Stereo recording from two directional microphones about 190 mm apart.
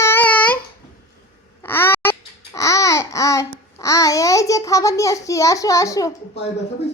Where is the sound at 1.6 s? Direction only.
10° left (ahead or behind).